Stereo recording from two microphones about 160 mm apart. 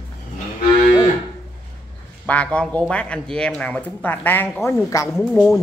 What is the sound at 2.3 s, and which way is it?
Speech, 10° left (ahead or behind).